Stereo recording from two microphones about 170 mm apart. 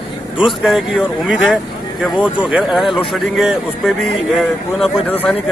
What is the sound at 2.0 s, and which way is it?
Speech, 5° right (ahead or behind).